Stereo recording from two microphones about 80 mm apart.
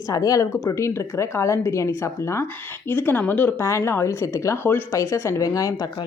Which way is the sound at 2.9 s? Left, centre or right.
Left.